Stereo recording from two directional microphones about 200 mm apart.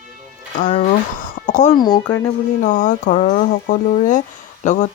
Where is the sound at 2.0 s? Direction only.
15° left (ahead or behind).